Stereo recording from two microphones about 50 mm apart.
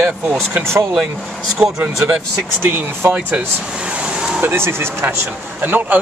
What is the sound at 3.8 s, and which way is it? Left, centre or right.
Vehicle, right.